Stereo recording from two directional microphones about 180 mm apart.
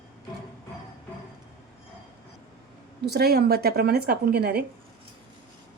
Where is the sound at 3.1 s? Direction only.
60° right (ahead or behind).